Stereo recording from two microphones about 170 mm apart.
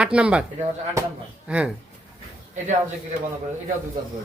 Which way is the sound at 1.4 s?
5° right (ahead or behind).